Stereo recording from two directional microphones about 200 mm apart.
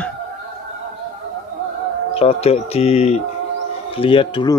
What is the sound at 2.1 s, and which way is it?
Speech, 30° left (ahead or behind).